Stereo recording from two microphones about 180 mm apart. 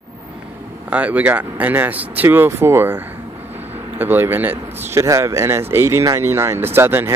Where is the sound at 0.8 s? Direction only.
10° right (ahead or behind).